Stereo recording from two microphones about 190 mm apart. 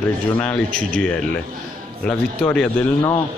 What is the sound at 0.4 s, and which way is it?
Speech, 5° left (ahead or behind).